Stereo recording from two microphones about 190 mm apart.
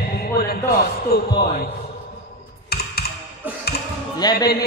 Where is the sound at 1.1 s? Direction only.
55° left (ahead or behind).